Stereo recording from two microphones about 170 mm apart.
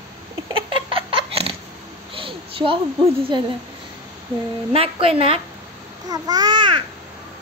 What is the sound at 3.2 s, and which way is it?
Speech, 30° right (ahead or behind).